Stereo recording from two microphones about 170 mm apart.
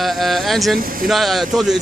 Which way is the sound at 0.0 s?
Centre (ahead or behind).